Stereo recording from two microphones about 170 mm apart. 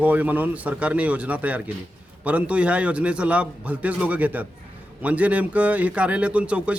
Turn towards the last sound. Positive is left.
turn(degrees=-5)  # may be behind; listen again after turning